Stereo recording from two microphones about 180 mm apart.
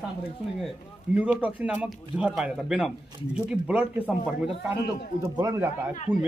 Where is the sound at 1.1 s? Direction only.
5° right (ahead or behind).